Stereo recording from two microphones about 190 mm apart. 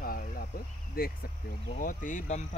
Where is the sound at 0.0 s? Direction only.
50° left (ahead or behind).